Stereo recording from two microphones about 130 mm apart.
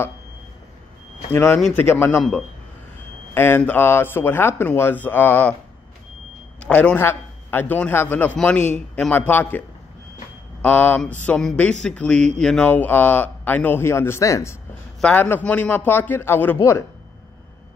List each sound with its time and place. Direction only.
1.3 s speech: 20° left (ahead or behind)
3.3 s speech: 15° left (ahead or behind)
6.6 s speech: 10° left (ahead or behind)
10.6 s speech: 15° left (ahead or behind)
15.0 s speech: 10° left (ahead or behind)